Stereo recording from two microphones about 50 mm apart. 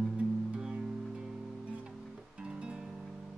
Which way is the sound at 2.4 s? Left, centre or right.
Centre.